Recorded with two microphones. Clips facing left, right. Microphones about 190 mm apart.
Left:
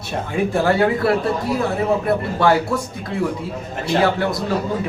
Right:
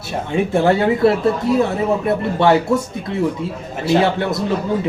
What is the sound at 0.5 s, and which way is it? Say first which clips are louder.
A man's voice: right 2 dB; 25° right (ahead or behind).